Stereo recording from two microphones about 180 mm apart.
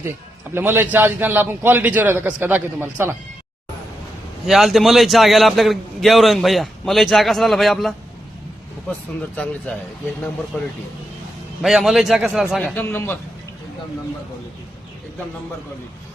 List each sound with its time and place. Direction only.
0.5 s a man's voice: 10° right (ahead or behind)
4.4 s a man's voice: centre (ahead or behind)
9.3 s speech: 5° left (ahead or behind)
11.6 s a man's voice: centre (ahead or behind)